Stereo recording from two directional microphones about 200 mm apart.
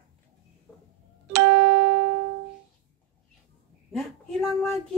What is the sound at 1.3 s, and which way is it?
Music, 65° right (ahead or behind).